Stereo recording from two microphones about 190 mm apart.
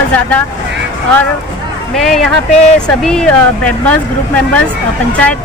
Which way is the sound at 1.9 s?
Centre (ahead or behind).